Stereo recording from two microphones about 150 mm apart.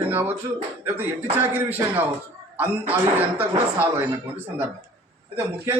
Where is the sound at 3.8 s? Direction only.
15° right (ahead or behind).